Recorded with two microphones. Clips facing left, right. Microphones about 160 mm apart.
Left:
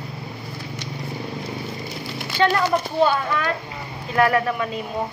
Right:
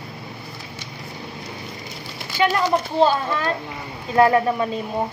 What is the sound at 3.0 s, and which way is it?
A child's voice, 30° right (ahead or behind).